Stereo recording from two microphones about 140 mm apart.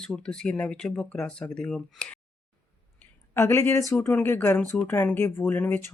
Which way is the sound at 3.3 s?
20° left (ahead or behind).